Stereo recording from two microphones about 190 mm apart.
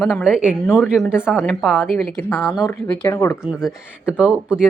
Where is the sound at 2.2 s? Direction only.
10° left (ahead or behind).